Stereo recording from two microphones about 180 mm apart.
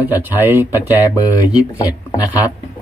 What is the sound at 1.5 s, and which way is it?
Speech, 20° left (ahead or behind).